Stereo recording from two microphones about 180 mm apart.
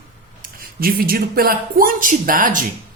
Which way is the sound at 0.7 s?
55° right (ahead or behind).